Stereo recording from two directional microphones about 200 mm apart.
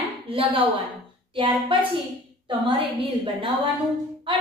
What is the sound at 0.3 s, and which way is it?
A woman's voice, 25° right (ahead or behind).